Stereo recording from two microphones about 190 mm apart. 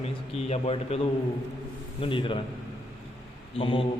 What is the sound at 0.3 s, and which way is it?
A man's voice, 30° left (ahead or behind).